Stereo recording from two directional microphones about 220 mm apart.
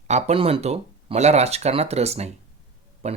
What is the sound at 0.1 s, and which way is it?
Speech, 30° right (ahead or behind).